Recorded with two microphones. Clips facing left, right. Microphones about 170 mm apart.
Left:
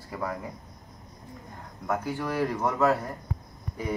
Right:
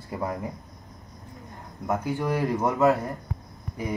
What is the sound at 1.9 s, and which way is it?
Speech, 20° right (ahead or behind).